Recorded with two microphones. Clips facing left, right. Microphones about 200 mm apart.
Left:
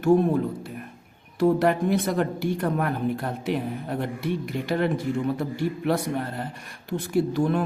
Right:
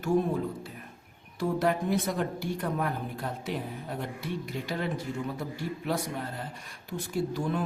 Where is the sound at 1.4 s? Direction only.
70° left (ahead or behind).